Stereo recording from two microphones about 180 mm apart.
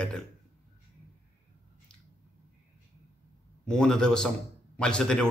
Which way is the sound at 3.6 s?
5° left (ahead or behind).